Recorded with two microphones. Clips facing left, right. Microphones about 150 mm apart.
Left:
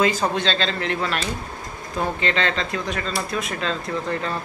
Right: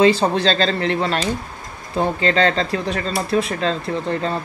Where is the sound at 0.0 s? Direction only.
30° right (ahead or behind).